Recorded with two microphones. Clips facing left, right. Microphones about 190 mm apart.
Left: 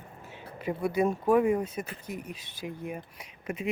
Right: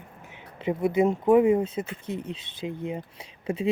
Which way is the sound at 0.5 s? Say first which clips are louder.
Right 5 dB; 20° right (ahead or behind).